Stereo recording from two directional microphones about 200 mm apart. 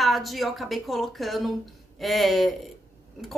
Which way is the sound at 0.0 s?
Centre (ahead or behind).